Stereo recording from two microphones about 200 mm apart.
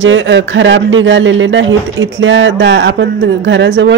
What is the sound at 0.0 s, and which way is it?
A woman's voice, 65° right (ahead or behind).